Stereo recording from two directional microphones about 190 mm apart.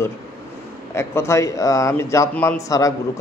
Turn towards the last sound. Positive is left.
turn(degrees=15)  # may be behind; listen again after turning